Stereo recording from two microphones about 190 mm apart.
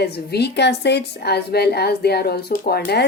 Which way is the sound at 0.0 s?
60° left (ahead or behind).